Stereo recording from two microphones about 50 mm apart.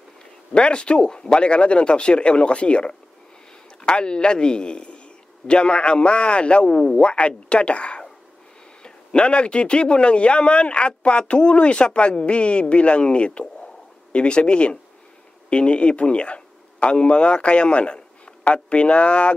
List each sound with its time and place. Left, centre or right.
0.5 s a man's voice: left